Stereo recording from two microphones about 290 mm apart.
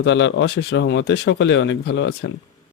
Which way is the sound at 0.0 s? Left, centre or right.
Left.